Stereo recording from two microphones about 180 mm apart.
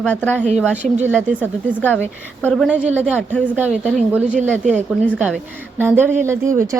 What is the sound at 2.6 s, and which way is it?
A woman's voice, 10° right (ahead or behind).